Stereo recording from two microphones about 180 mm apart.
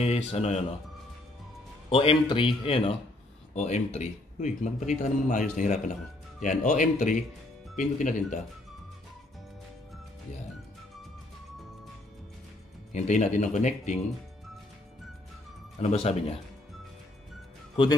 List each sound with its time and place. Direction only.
0.0 s a man's voice: 35° left (ahead or behind)
1.9 s a man's voice: 30° left (ahead or behind)
12.9 s a man's voice: 40° left (ahead or behind)
15.8 s a man's voice: 35° left (ahead or behind)